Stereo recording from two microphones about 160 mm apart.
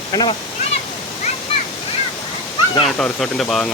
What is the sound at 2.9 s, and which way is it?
Speech, 5° left (ahead or behind).